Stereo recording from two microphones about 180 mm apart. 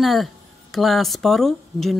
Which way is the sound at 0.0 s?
Centre (ahead or behind).